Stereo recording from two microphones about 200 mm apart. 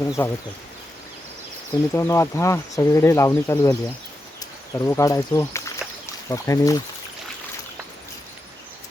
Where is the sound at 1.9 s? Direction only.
15° left (ahead or behind).